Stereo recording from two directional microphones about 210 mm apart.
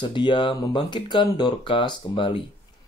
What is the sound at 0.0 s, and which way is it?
Speech, 25° left (ahead or behind).